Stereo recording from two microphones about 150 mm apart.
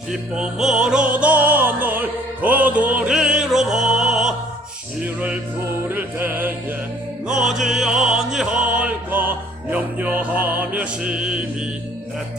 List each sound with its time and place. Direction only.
0.1 s music: 5° right (ahead or behind)
7.3 s opera: 5° right (ahead or behind)
10.8 s music: 5° right (ahead or behind)